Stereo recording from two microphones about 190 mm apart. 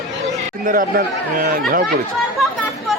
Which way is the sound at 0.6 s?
50° right (ahead or behind).